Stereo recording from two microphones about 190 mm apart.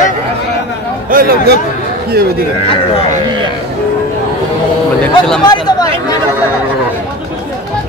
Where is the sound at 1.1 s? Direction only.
50° right (ahead or behind).